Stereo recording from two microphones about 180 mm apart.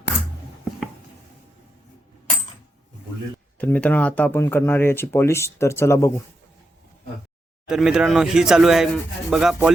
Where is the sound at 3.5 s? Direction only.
10° left (ahead or behind).